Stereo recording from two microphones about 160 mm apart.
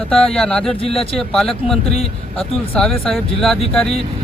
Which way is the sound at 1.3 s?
Centre (ahead or behind).